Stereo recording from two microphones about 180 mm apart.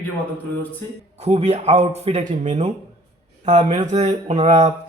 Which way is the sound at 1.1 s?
35° right (ahead or behind).